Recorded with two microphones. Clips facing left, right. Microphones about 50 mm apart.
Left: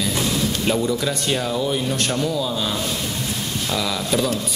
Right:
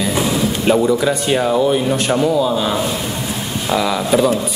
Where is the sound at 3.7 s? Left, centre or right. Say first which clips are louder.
Right 8 dB; centre.